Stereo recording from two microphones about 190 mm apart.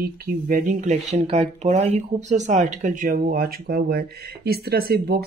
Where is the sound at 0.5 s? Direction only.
45° right (ahead or behind).